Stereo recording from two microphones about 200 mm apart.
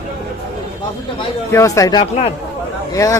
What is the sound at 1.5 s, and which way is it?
Speech, 15° left (ahead or behind).